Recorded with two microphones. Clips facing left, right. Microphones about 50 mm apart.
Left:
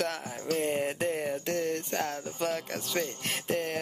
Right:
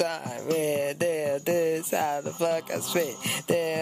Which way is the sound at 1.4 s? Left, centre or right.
Centre.